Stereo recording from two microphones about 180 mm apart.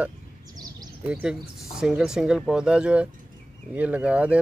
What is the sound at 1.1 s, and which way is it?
Speech, 5° right (ahead or behind).